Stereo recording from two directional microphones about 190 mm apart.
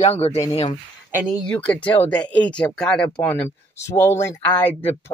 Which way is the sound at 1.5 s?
5° left (ahead or behind).